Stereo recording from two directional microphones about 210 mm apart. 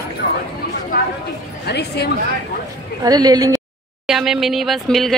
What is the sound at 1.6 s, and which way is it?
Speech, 50° left (ahead or behind).